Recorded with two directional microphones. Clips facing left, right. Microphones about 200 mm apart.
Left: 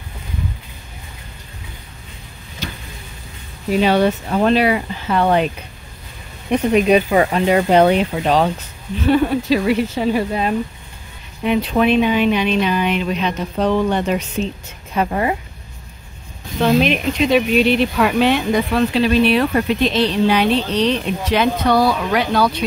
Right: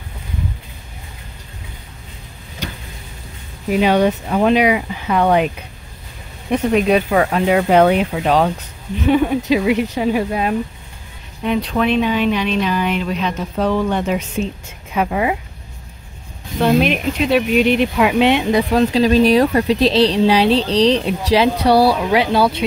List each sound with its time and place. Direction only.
3.8 s speech: 10° right (ahead or behind)
6.8 s speech: centre (ahead or behind)
11.4 s speech: 5° left (ahead or behind)
16.6 s speech: 5° right (ahead or behind)
18.2 s speech: 25° right (ahead or behind)
18.7 s speech: 40° right (ahead or behind)